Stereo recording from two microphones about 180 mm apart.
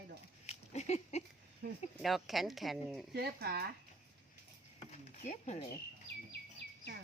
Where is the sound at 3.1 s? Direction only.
65° right (ahead or behind).